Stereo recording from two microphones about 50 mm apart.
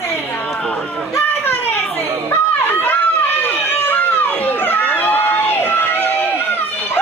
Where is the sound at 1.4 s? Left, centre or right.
Left.